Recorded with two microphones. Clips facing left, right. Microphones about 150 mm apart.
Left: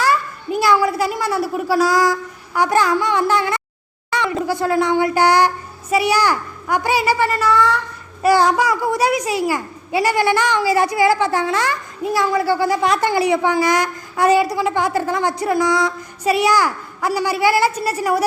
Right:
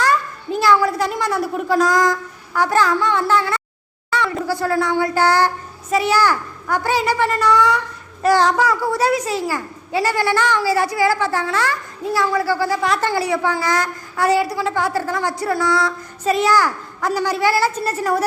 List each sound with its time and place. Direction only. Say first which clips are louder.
0.0 s a child's voice: even; 10° left (ahead or behind)